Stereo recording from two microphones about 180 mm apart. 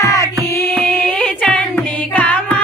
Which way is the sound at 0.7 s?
5° left (ahead or behind).